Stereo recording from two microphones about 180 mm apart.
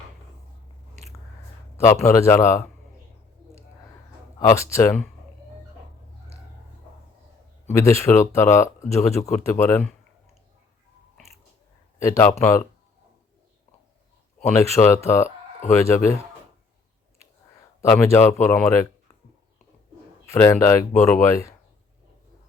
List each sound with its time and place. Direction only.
1.8 s speech: 15° left (ahead or behind)
4.4 s speech: 15° left (ahead or behind)
7.7 s speech: 15° left (ahead or behind)
11.9 s speech: 15° left (ahead or behind)
14.5 s speech: 15° left (ahead or behind)
17.7 s speech: 15° left (ahead or behind)
20.2 s speech: 15° left (ahead or behind)